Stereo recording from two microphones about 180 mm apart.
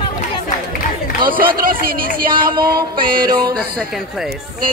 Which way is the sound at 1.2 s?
55° right (ahead or behind).